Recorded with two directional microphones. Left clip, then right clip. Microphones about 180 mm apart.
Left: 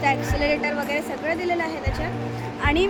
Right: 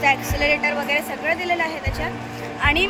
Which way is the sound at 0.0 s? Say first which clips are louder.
Right 3 dB; 15° left (ahead or behind).